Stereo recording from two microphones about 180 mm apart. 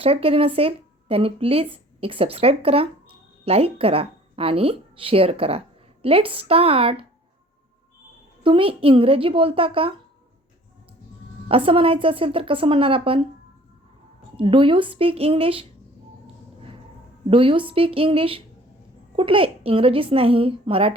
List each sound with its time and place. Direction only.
0.0 s speech: 35° right (ahead or behind)
8.4 s a woman's voice: 30° right (ahead or behind)
11.4 s a woman's voice: 30° right (ahead or behind)
14.3 s a woman's voice: 30° right (ahead or behind)
17.2 s a woman's voice: 30° right (ahead or behind)